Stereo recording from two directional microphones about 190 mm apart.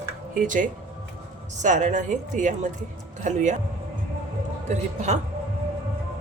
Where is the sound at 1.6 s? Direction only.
40° right (ahead or behind).